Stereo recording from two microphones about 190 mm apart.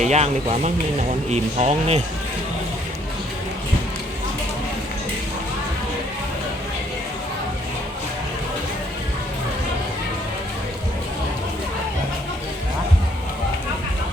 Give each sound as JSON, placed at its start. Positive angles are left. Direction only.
{"t": 0.0, "sound": "speech", "side_deg": -35}